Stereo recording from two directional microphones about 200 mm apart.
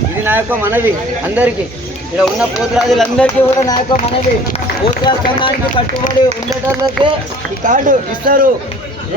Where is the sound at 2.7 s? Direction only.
Centre (ahead or behind).